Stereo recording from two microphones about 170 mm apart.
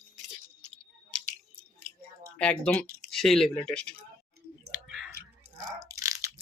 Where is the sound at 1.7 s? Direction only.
60° right (ahead or behind).